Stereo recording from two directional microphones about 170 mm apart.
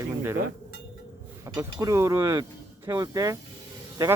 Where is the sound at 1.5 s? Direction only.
20° right (ahead or behind).